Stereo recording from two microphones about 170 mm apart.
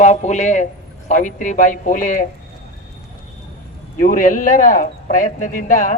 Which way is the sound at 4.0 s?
55° left (ahead or behind).